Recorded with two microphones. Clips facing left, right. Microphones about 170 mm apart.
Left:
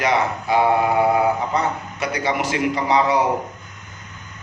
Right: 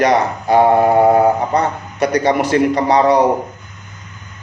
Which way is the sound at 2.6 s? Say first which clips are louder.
Right 3 dB; 40° right (ahead or behind).